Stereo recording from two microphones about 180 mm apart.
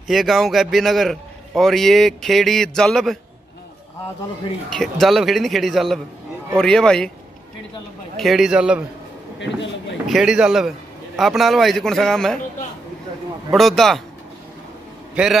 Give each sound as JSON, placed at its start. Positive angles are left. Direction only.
{"t": 0.1, "sound": "a man's voice", "side_deg": 0}
{"t": 4.6, "sound": "a man's voice", "side_deg": 0}
{"t": 8.2, "sound": "a man's voice", "side_deg": 0}
{"t": 9.4, "sound": "a sound", "side_deg": 85}
{"t": 10.0, "sound": "a man's voice", "side_deg": 0}
{"t": 13.5, "sound": "a man's voice", "side_deg": 0}